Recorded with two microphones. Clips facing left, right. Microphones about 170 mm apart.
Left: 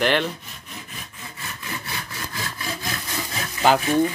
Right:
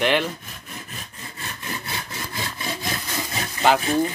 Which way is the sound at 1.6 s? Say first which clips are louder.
Right 1 dB; 20° right (ahead or behind).